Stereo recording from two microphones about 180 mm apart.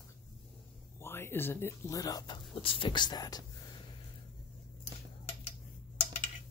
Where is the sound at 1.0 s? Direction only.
15° left (ahead or behind).